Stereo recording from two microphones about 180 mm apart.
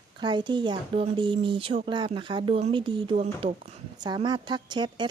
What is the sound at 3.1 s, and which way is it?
Speech, 40° right (ahead or behind).